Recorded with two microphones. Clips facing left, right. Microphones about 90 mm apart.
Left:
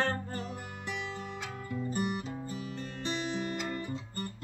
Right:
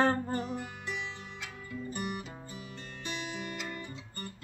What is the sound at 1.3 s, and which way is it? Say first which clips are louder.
Music: left 4 dB; 35° left (ahead or behind).